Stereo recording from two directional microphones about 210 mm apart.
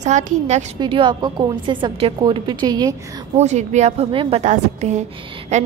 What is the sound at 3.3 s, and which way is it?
A woman's voice, 35° right (ahead or behind).